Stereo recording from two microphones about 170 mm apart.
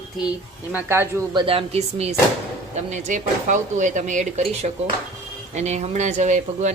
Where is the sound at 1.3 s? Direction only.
30° right (ahead or behind).